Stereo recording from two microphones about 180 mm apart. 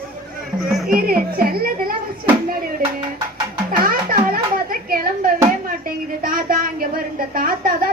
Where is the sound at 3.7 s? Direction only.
55° right (ahead or behind).